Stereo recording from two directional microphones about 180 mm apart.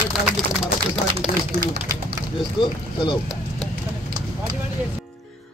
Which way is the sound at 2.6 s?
25° left (ahead or behind).